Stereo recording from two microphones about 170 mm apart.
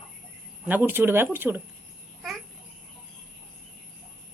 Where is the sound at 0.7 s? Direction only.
10° right (ahead or behind).